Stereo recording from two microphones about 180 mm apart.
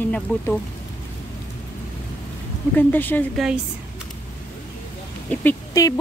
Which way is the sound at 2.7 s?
10° left (ahead or behind).